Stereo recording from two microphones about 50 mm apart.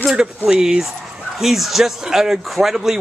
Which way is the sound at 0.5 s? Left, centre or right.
Centre.